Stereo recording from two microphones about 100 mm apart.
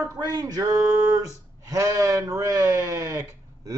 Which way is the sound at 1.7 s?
35° right (ahead or behind).